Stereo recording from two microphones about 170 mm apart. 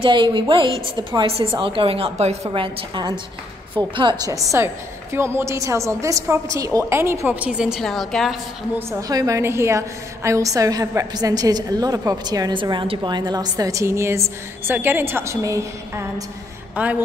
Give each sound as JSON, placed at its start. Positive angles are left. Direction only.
{"t": 0.0, "sound": "a woman's voice", "side_deg": -30}
{"t": 8.7, "sound": "a woman's voice", "side_deg": -20}